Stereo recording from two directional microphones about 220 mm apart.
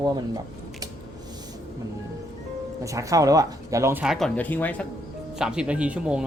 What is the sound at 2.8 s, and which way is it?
Speech, 15° right (ahead or behind).